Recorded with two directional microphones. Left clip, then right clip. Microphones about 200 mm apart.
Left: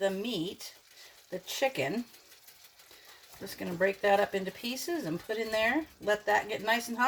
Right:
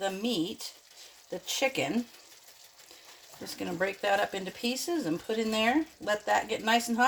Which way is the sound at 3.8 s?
35° right (ahead or behind).